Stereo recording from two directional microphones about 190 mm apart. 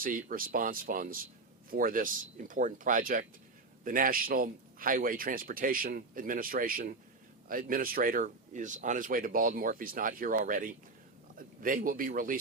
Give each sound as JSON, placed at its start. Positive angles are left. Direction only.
{"t": 0.0, "sound": "speech", "side_deg": -45}